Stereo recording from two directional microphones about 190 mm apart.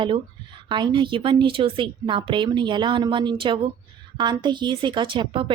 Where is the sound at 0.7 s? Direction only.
25° right (ahead or behind).